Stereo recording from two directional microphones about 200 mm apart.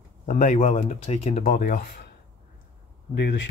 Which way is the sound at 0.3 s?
35° left (ahead or behind).